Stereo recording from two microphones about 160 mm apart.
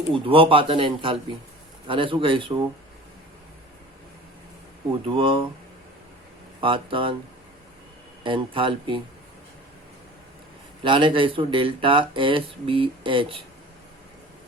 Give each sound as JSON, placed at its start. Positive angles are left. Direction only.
{"t": 0.1, "sound": "speech", "side_deg": -35}
{"t": 4.9, "sound": "speech", "side_deg": -35}
{"t": 6.6, "sound": "speech", "side_deg": -35}
{"t": 8.2, "sound": "speech", "side_deg": -30}
{"t": 10.8, "sound": "speech", "side_deg": -30}